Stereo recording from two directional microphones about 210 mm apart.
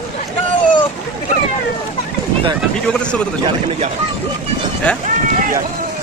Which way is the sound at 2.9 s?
5° left (ahead or behind).